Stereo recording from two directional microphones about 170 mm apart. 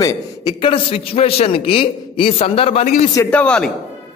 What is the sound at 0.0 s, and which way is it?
A man's voice, 20° left (ahead or behind).